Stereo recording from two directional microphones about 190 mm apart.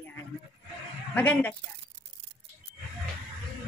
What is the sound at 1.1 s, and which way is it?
Speech, 10° left (ahead or behind).